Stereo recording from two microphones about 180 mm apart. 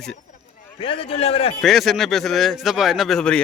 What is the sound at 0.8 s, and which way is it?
Speech, 30° left (ahead or behind).